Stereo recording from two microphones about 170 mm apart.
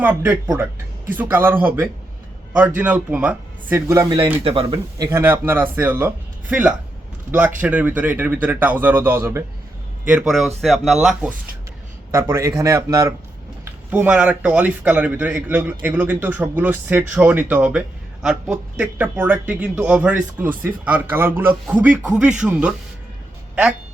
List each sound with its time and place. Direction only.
0.0 s speech: 10° right (ahead or behind)
4.4 s speech: 30° right (ahead or behind)
4.9 s speech: 15° right (ahead or behind)
12.3 s speech: 15° right (ahead or behind)